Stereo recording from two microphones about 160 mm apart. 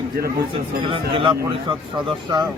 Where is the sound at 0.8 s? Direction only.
35° right (ahead or behind).